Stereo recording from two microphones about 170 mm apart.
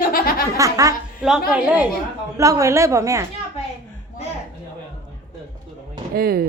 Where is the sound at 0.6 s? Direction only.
20° right (ahead or behind).